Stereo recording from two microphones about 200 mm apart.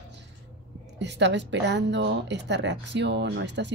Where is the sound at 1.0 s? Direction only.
60° right (ahead or behind).